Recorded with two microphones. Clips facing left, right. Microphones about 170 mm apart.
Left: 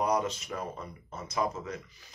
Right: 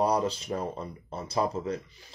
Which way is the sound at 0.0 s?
30° right (ahead or behind).